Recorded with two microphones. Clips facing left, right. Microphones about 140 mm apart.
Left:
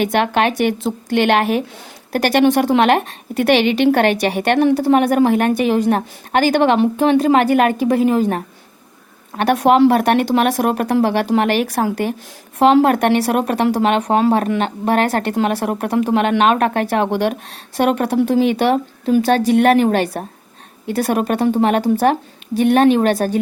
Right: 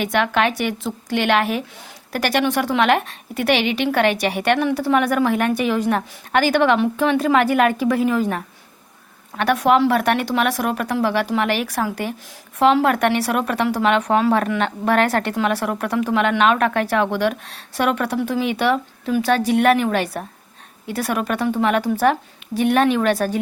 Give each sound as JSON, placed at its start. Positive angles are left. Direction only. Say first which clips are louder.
{"t": 1.1, "sound": "a woman's voice", "louder": "left 4 dB", "side_deg": 55}
{"t": 2.6, "sound": "a woman's voice", "louder": "left 4 dB", "side_deg": 35}
{"t": 4.1, "sound": "a woman's voice", "louder": "left 3 dB", "side_deg": 35}
{"t": 12.5, "sound": "a woman's voice", "louder": "left 4 dB", "side_deg": 35}
{"t": 17.1, "sound": "a woman's voice", "louder": "left 2 dB", "side_deg": 25}